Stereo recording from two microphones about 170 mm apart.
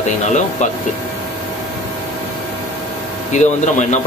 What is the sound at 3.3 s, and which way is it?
Speech, 45° left (ahead or behind).